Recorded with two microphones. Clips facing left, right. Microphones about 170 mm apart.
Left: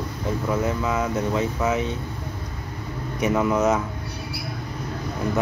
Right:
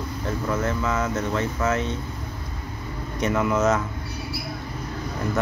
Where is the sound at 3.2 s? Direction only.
20° left (ahead or behind).